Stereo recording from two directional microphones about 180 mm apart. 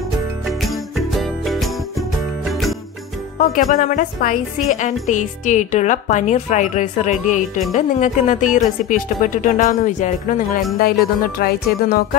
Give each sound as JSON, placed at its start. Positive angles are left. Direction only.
{"t": 0.5, "sound": "jingle bell", "side_deg": 0}
{"t": 3.3, "sound": "speech", "side_deg": 45}